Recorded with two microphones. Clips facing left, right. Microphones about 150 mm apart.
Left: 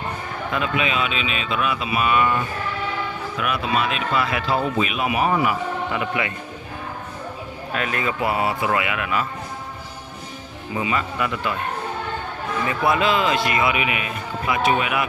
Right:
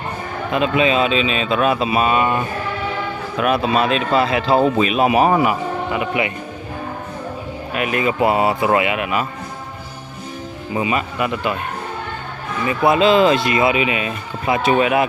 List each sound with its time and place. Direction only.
0.5 s speech: 25° right (ahead or behind)
5.9 s speech: 15° right (ahead or behind)
7.7 s speech: 15° right (ahead or behind)
10.8 s speech: 20° right (ahead or behind)
12.6 s speech: 20° right (ahead or behind)